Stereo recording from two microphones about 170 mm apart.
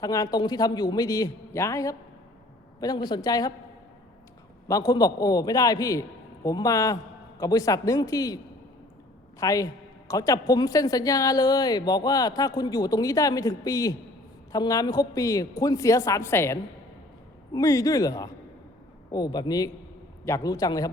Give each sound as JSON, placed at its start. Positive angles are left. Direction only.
{"t": 0.0, "sound": "speech", "side_deg": 20}
{"t": 4.7, "sound": "speech", "side_deg": 20}
{"t": 9.4, "sound": "speech", "side_deg": 20}